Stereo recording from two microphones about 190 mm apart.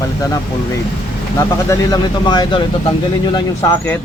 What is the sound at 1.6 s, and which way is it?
Speech, 20° left (ahead or behind).